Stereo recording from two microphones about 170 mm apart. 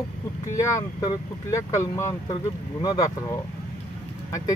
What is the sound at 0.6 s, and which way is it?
Speech, 20° left (ahead or behind).